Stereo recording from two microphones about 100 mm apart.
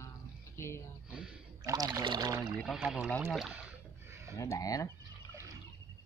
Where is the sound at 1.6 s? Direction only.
40° right (ahead or behind).